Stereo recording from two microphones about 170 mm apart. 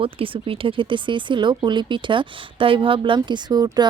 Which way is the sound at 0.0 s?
30° right (ahead or behind).